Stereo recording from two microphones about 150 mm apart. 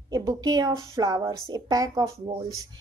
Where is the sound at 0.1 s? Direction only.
25° right (ahead or behind).